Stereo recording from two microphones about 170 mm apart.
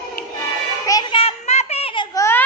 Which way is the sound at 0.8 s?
20° left (ahead or behind).